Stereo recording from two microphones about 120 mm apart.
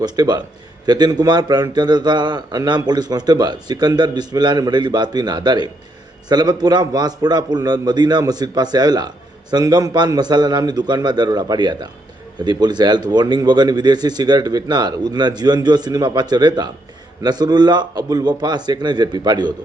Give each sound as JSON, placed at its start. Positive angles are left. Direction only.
{"t": 0.0, "sound": "a man's voice", "side_deg": -35}